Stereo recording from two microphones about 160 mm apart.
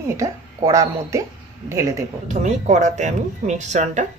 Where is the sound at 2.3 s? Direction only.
45° right (ahead or behind).